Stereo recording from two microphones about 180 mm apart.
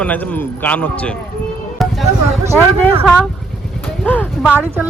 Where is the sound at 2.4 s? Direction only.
15° right (ahead or behind).